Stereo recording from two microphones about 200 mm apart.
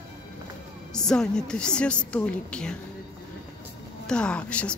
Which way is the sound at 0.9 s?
5° left (ahead or behind).